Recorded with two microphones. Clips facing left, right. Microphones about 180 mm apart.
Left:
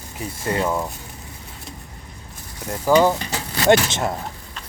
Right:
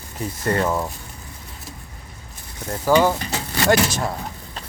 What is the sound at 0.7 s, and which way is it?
Speech, centre (ahead or behind).